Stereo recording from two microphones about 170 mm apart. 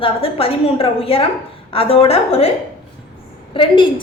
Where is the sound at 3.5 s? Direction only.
30° left (ahead or behind).